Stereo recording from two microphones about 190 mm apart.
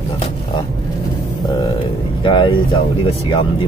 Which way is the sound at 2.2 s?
25° left (ahead or behind).